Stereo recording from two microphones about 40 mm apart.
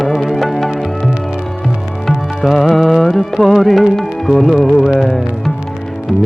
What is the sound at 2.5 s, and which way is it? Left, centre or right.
Music, centre.